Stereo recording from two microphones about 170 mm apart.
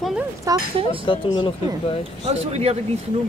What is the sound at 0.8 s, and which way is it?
Speech, 30° left (ahead or behind).